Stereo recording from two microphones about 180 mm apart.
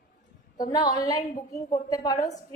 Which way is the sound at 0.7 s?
20° left (ahead or behind).